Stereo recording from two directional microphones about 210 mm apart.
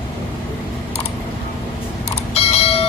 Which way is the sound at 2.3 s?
30° left (ahead or behind).